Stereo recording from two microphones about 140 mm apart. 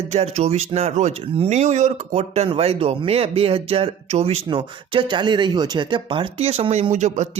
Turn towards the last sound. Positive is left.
turn(degrees=-55)  # may be behind; listen again after turning